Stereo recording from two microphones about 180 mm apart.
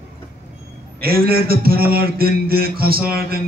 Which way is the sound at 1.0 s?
55° right (ahead or behind).